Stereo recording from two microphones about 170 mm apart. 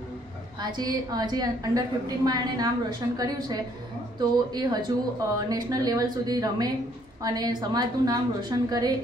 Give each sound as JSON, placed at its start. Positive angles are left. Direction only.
{"t": 0.6, "sound": "a woman's voice", "side_deg": -25}